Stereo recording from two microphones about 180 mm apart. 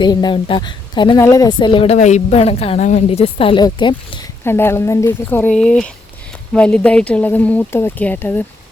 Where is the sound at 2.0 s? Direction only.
40° left (ahead or behind).